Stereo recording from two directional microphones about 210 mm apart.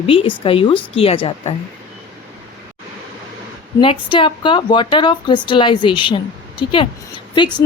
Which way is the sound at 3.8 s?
25° left (ahead or behind).